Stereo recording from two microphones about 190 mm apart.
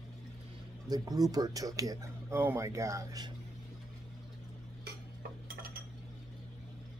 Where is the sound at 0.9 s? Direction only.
20° right (ahead or behind).